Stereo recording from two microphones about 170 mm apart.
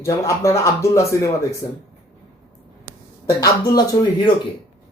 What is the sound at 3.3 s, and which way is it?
Speech, 20° left (ahead or behind).